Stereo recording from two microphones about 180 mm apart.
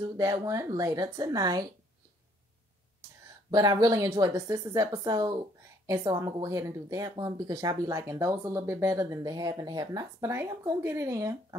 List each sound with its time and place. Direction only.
0.0 s a woman's voice: 20° right (ahead or behind)
3.4 s a woman's voice: 20° right (ahead or behind)